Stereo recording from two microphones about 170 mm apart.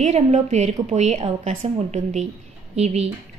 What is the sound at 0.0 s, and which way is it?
A woman's voice, 40° right (ahead or behind).